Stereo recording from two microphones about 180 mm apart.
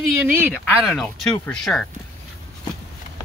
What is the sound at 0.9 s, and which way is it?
Speech, 5° left (ahead or behind).